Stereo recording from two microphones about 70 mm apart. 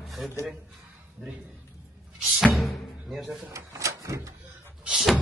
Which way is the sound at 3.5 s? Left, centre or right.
Right.